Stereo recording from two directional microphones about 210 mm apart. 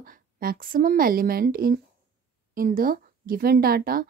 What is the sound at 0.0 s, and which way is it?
A woman's voice, 45° right (ahead or behind).